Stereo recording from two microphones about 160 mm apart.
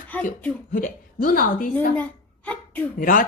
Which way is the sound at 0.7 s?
60° left (ahead or behind).